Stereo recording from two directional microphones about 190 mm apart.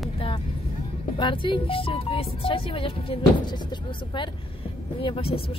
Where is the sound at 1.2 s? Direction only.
25° left (ahead or behind).